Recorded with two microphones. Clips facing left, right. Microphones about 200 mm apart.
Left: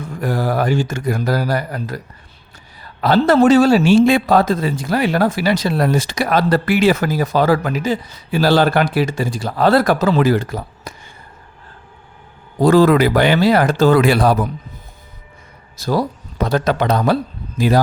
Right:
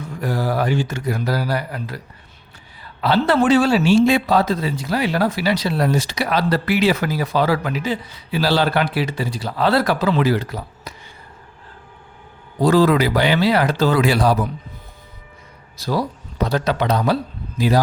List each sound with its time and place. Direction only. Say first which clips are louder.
0.0 s a man's voice: left 3 dB; 50° left (ahead or behind)
12.5 s a man's voice: left 3 dB; 50° left (ahead or behind)
15.8 s a man's voice: left 3 dB; 45° left (ahead or behind)